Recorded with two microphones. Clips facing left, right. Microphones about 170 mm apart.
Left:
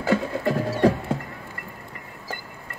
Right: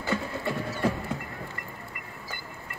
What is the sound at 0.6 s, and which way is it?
Music, 35° left (ahead or behind).